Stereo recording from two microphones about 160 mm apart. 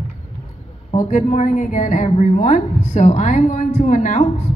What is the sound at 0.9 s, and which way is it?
A woman's voice, 50° left (ahead or behind).